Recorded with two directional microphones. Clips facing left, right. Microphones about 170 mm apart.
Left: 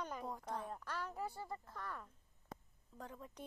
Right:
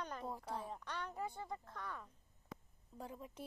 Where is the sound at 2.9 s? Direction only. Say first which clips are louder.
Right 2 dB; 15° right (ahead or behind).